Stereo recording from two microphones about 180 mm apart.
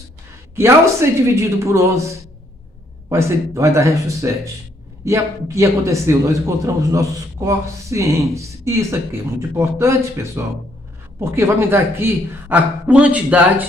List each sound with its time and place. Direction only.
0.6 s a man's voice: 15° right (ahead or behind)